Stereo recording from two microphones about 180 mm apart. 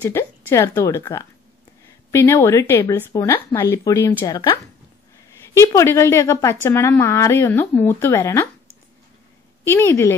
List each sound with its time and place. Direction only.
0.0 s speech: 15° left (ahead or behind)
9.7 s speech: 15° left (ahead or behind)